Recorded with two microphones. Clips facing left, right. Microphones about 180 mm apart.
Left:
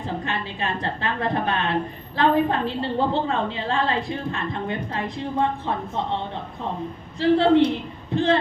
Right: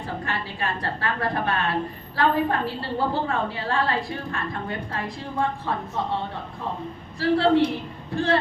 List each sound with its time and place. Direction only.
0.0 s a woman's voice: 20° left (ahead or behind)
7.2 s a woman's voice: 20° left (ahead or behind)